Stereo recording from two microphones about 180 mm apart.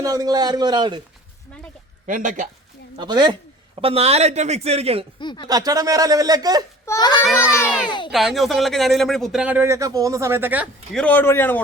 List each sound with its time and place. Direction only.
0.0 s a man's voice: 20° right (ahead or behind)
2.0 s speech: 45° right (ahead or behind)
3.0 s a man's voice: 25° right (ahead or behind)
5.2 s a child's voice: 25° left (ahead or behind)
5.5 s a man's voice: 20° right (ahead or behind)
6.8 s a child's voice: 20° left (ahead or behind)
8.1 s speech: centre (ahead or behind)
10.9 s speech: 10° left (ahead or behind)